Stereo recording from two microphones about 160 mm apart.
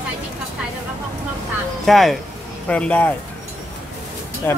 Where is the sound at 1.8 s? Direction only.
Centre (ahead or behind).